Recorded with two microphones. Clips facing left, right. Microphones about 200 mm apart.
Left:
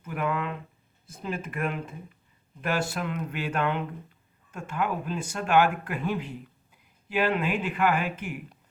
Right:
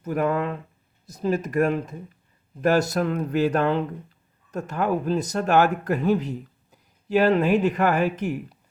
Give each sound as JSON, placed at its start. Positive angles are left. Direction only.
{"t": 0.0, "sound": "speech", "side_deg": -40}